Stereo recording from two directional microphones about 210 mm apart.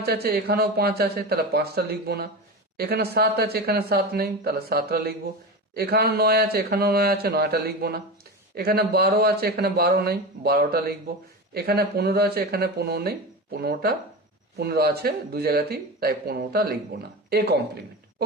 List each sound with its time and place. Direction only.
0.0 s speech: 50° right (ahead or behind)